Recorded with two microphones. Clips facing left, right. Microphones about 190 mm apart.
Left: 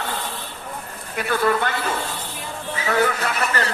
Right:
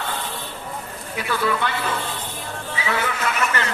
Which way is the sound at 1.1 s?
50° left (ahead or behind).